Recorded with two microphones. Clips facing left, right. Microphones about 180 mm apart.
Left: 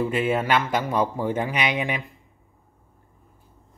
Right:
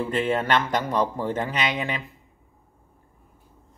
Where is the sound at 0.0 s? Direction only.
10° left (ahead or behind).